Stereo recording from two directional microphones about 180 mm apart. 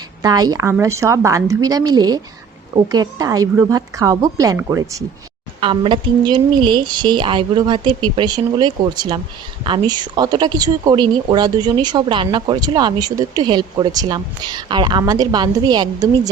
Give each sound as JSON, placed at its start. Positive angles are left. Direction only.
{"t": 0.2, "sound": "a woman's voice", "side_deg": -20}
{"t": 5.5, "sound": "a woman's voice", "side_deg": -30}